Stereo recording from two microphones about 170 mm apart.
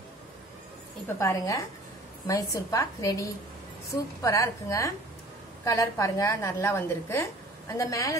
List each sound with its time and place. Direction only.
1.0 s a woman's voice: 20° left (ahead or behind)